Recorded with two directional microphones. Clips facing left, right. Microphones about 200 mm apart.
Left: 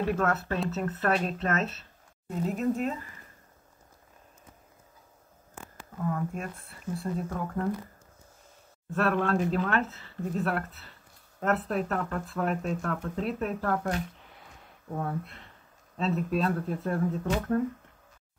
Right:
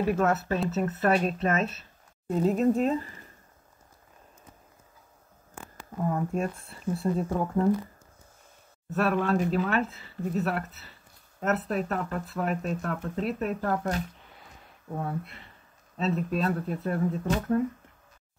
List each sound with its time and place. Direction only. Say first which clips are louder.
0.0 s speech: right 3 dB; 5° right (ahead or behind)
2.2 s speech: right 5 dB; 35° right (ahead or behind)
6.1 s speech: right 5 dB; 30° right (ahead or behind)
8.9 s speech: right 1 dB; 5° right (ahead or behind)
15.0 s speech: even; 5° right (ahead or behind)